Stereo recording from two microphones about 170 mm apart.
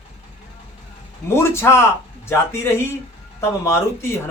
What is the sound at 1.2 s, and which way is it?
Speech, 15° left (ahead or behind).